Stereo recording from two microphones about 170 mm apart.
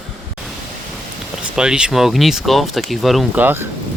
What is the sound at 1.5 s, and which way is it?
Speech, 5° right (ahead or behind).